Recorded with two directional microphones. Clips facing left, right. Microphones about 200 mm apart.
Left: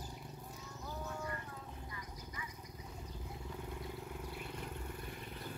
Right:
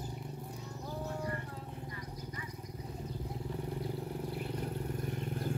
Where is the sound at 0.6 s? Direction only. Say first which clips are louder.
Right 4 dB; 35° right (ahead or behind).